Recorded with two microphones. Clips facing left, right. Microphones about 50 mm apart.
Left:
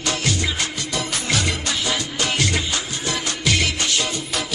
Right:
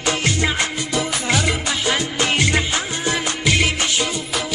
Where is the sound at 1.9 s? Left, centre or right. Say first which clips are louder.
Right 4 dB; right.